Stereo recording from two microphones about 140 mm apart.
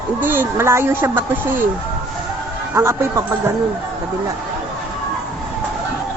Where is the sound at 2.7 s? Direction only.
20° right (ahead or behind).